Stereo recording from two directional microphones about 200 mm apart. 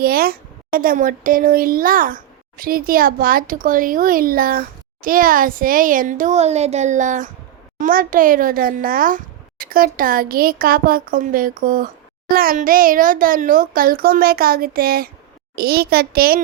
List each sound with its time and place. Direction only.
0.0 s a woman's voice: 50° right (ahead or behind)